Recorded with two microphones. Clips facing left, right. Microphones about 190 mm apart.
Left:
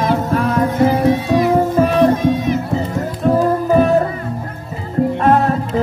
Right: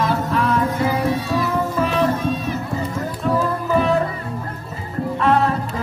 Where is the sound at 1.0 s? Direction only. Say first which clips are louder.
Left 7 dB; 15° left (ahead or behind).